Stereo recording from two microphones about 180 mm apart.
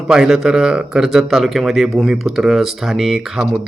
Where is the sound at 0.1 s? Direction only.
5° right (ahead or behind).